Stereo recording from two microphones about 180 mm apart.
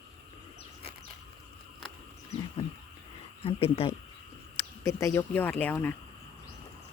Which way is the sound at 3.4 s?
30° left (ahead or behind).